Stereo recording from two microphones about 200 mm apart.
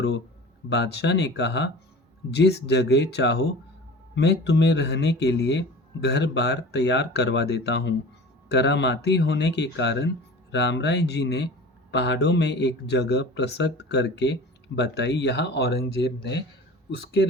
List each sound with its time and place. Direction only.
0.7 s speech: 55° left (ahead or behind)